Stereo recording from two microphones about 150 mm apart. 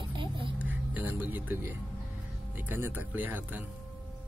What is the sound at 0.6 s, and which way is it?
Speech, 10° right (ahead or behind).